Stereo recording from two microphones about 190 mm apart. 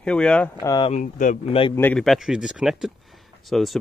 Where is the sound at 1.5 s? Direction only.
30° left (ahead or behind).